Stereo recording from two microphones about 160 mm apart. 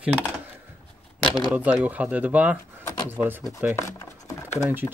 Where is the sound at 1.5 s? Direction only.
10° right (ahead or behind).